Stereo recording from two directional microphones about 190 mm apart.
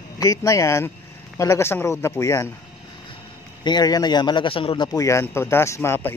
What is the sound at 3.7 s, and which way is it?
A man's voice, 20° left (ahead or behind).